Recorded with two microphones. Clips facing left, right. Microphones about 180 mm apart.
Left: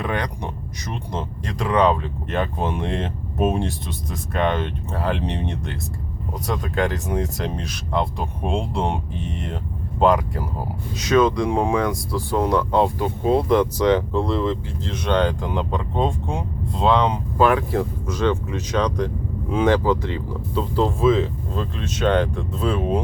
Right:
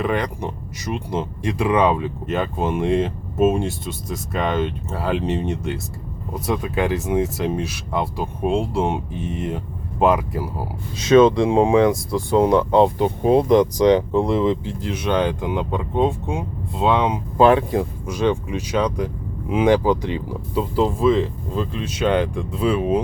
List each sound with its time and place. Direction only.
0.0 s speech: 5° right (ahead or behind)
11.0 s speech: 25° right (ahead or behind); by 17.2 s 5° right (ahead or behind)
17.3 s speech: 25° right (ahead or behind)
17.7 s speech: 10° right (ahead or behind)
21.6 s speech: 10° right (ahead or behind)